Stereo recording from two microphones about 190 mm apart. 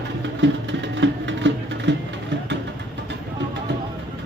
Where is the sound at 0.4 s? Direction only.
75° right (ahead or behind).